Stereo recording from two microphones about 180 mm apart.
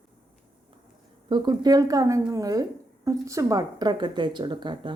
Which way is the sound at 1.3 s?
25° right (ahead or behind).